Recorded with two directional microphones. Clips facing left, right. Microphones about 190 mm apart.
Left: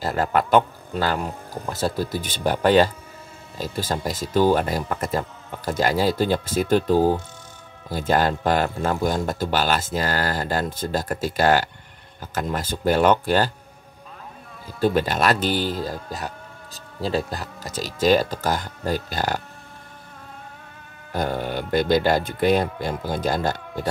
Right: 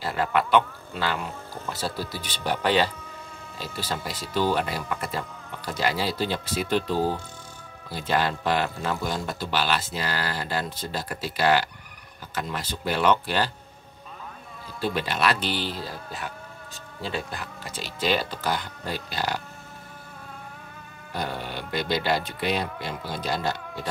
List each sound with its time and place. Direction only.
0.0 s speech: 45° left (ahead or behind)
14.8 s speech: 45° left (ahead or behind)
21.1 s speech: 45° left (ahead or behind)